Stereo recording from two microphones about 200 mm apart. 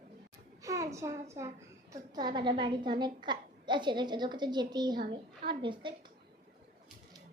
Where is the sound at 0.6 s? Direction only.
15° right (ahead or behind).